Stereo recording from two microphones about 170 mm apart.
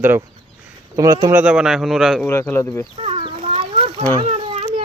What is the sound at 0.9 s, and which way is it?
Speech, 20° right (ahead or behind).